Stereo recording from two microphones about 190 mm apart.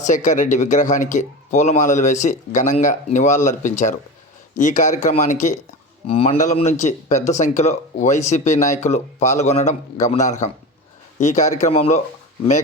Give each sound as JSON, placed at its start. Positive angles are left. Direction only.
{"t": 0.0, "sound": "speech", "side_deg": 40}